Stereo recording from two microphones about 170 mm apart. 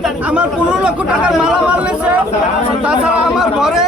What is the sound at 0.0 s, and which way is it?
Speech, 5° right (ahead or behind).